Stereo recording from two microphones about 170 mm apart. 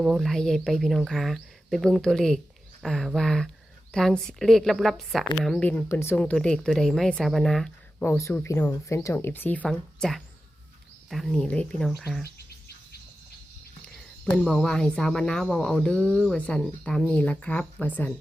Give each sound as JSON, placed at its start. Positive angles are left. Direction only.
{"t": 0.0, "sound": "a woman's voice", "side_deg": 0}
{"t": 8.0, "sound": "a woman's voice", "side_deg": 15}
{"t": 12.2, "sound": "insect", "side_deg": 70}
{"t": 13.8, "sound": "a woman's voice", "side_deg": 5}